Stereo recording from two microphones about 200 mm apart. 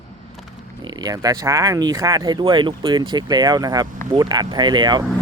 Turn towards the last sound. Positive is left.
turn(degrees=-20)  # may be behind; listen again after turning